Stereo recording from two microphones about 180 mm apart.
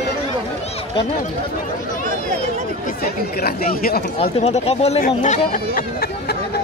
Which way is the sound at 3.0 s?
55° left (ahead or behind).